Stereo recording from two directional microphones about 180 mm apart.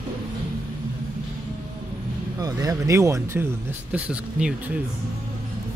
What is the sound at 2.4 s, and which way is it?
Speech, 20° right (ahead or behind).